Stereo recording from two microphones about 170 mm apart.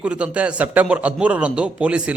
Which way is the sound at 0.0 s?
5° right (ahead or behind).